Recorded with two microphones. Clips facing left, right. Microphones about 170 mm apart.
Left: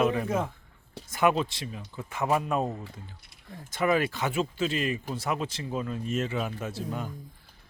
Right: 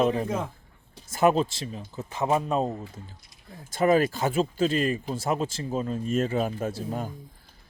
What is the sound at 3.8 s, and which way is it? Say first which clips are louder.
Speech: right 4 dB; 40° right (ahead or behind).